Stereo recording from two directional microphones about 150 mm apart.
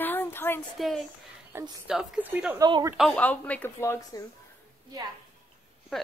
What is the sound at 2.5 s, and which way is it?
Speech, 25° right (ahead or behind).